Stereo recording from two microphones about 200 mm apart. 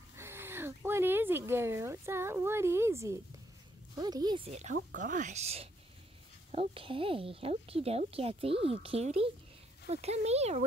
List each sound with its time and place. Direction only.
0.1 s a sound: 15° right (ahead or behind)
3.9 s speech: 20° right (ahead or behind)
4.5 s a woman's voice: 35° right (ahead or behind)